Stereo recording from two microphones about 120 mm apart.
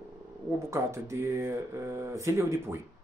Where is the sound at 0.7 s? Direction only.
25° right (ahead or behind).